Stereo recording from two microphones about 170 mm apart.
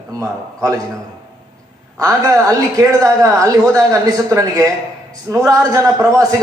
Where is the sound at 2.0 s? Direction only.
20° right (ahead or behind).